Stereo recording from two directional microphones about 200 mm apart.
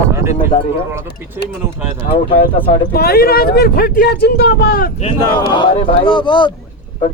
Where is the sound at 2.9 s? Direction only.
50° left (ahead or behind).